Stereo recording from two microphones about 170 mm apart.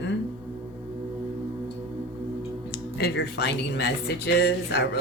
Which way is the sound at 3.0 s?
80° left.